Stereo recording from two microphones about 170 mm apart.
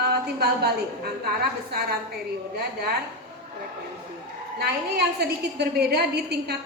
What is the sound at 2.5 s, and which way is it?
Speech, 65° right (ahead or behind).